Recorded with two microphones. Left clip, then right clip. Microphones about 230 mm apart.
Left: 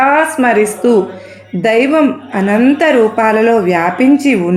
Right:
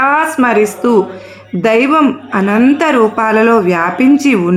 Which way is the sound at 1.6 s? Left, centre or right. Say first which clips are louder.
Right 1 dB; right.